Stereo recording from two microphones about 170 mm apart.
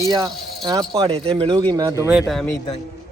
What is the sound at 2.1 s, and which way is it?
Speech, centre (ahead or behind).